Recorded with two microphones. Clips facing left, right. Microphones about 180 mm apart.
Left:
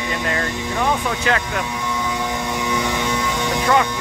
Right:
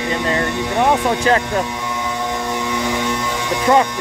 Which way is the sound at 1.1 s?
35° right (ahead or behind).